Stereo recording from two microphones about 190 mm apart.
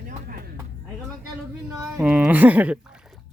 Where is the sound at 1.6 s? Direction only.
15° right (ahead or behind).